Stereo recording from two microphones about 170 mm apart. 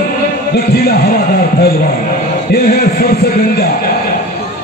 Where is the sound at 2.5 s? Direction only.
65° left (ahead or behind).